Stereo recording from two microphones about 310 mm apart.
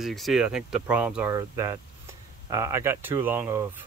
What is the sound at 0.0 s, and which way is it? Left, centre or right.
Speech, centre.